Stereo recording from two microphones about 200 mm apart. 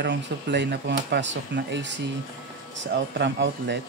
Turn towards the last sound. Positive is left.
turn(degrees=-60)  # may be behind; listen again after turning